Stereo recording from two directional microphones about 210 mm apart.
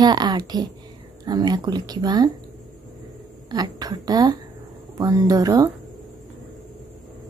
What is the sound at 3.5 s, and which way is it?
A woman's voice, 20° right (ahead or behind).